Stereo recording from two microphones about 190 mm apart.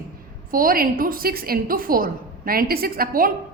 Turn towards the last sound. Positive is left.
turn(degrees=-50)  # may be behind; listen again after turning